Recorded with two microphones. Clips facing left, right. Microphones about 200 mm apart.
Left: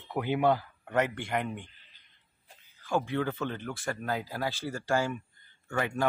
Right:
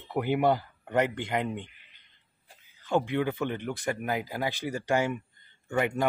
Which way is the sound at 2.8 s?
20° right (ahead or behind).